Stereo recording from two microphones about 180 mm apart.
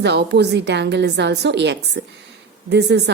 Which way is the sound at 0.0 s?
70° right (ahead or behind).